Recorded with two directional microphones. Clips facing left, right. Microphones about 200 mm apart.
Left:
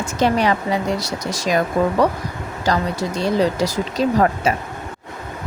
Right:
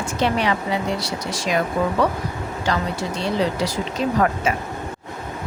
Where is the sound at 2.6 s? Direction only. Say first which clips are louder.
Left 4 dB; 40° left (ahead or behind).